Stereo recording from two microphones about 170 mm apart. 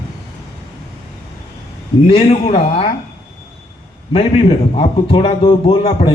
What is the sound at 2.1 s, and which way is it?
Speech, 40° left (ahead or behind).